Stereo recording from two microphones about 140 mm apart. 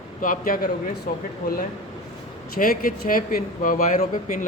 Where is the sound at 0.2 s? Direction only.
80° left.